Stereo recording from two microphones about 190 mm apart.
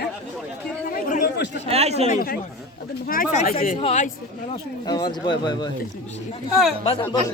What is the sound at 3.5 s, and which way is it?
Speech, 50° left (ahead or behind).